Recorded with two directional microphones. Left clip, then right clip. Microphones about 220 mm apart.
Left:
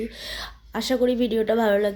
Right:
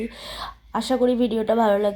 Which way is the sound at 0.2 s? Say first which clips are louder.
Even; centre (ahead or behind).